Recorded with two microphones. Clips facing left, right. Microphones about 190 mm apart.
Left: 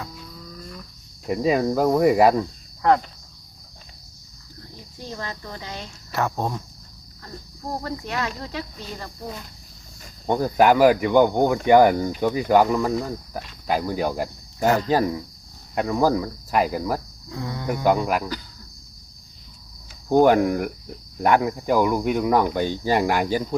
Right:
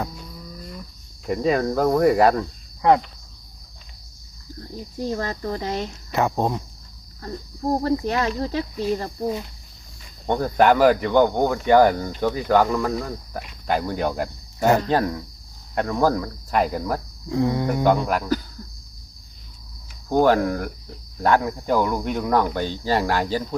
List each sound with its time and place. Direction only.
1.3 s speech: 5° left (ahead or behind)
5.0 s speech: 45° right (ahead or behind)
6.1 s speech: 15° right (ahead or behind)
7.7 s speech: 35° right (ahead or behind)
10.2 s speech: 10° left (ahead or behind)
17.2 s speech: 25° right (ahead or behind)
17.8 s speech: 10° left (ahead or behind)
20.2 s speech: 15° left (ahead or behind)